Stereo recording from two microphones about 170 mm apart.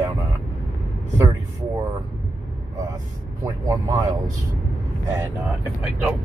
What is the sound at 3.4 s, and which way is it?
Speech, 20° right (ahead or behind).